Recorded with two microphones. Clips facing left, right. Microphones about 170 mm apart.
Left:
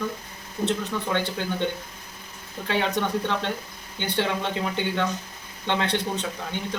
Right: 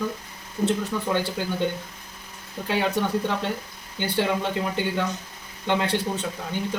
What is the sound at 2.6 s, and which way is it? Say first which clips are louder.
Speech: right 1 dB; 5° right (ahead or behind).